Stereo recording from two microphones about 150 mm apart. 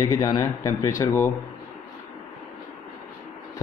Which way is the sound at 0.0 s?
25° left (ahead or behind).